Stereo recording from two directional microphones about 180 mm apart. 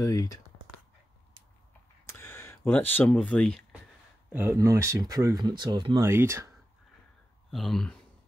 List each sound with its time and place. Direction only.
0.0 s speech: 20° left (ahead or behind)
2.0 s speech: 15° left (ahead or behind)
4.3 s speech: 10° right (ahead or behind)
7.5 s speech: centre (ahead or behind)